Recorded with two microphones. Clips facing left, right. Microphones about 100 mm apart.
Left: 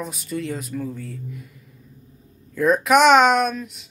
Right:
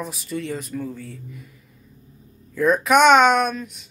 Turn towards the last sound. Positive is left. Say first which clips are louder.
# even
turn(degrees=0)  # may be behind; listen again after turning